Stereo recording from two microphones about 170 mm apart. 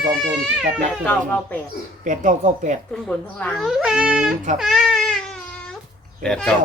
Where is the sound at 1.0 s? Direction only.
10° left (ahead or behind).